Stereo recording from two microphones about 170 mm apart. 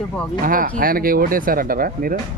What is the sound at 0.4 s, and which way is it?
Speech, 55° right (ahead or behind).